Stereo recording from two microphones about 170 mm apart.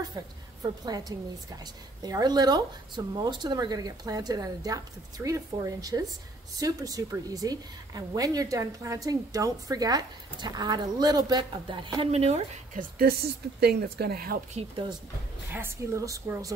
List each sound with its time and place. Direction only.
0.1 s a woman's voice: 20° right (ahead or behind); by 12.4 s 35° right (ahead or behind)
12.7 s speech: 65° right (ahead or behind)
14.5 s speech: 40° right (ahead or behind)
15.5 s speech: 15° right (ahead or behind)